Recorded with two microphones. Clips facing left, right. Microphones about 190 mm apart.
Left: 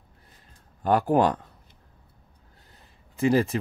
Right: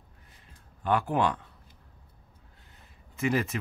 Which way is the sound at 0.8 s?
40° left (ahead or behind).